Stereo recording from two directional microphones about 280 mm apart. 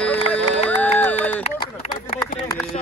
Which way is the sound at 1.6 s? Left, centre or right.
Centre.